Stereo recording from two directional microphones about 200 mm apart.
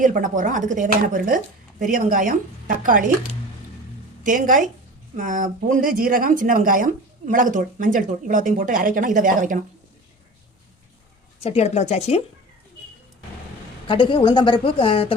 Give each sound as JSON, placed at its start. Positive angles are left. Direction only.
{"t": 0.0, "sound": "speech", "side_deg": -40}
{"t": 4.2, "sound": "speech", "side_deg": -40}
{"t": 11.4, "sound": "speech", "side_deg": 30}
{"t": 13.8, "sound": "speech", "side_deg": 25}